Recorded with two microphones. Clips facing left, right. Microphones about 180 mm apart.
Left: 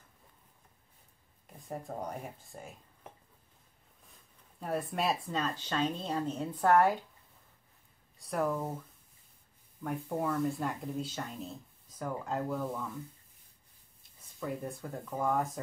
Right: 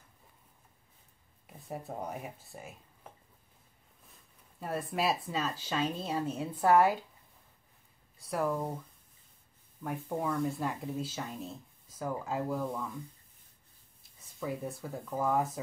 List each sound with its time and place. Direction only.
1.7 s speech: 5° right (ahead or behind)
4.6 s speech: centre (ahead or behind)
8.2 s speech: centre (ahead or behind)
9.8 s speech: centre (ahead or behind)
14.4 s speech: centre (ahead or behind)